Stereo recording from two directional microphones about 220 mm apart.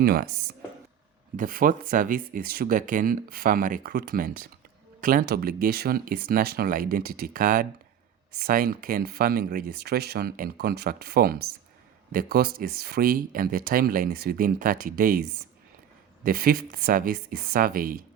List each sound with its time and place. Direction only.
0.0 s speech: 45° right (ahead or behind)
1.4 s speech: 40° right (ahead or behind)
16.2 s speech: 40° right (ahead or behind)